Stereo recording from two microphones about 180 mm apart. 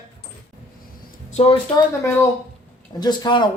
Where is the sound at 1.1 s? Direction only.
35° left (ahead or behind).